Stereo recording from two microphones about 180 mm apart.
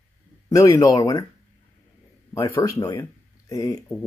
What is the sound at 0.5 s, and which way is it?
Speech, 20° left (ahead or behind).